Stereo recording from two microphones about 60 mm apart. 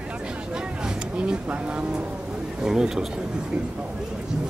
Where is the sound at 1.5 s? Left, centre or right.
Right.